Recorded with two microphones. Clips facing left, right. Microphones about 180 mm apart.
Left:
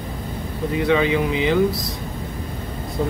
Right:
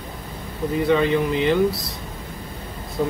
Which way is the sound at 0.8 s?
Centre (ahead or behind).